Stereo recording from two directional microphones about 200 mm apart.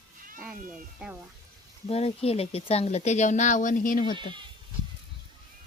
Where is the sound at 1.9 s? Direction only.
30° left (ahead or behind).